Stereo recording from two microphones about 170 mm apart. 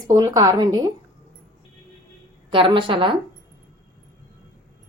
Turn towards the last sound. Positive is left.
turn(degrees=-30)  # may be behind; listen again after turning